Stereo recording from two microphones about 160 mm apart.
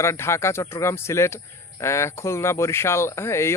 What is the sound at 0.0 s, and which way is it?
Speech, 15° left (ahead or behind).